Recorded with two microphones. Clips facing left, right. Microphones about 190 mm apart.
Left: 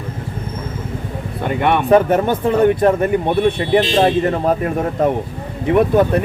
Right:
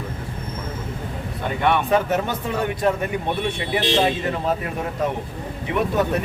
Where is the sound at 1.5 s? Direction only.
55° left (ahead or behind).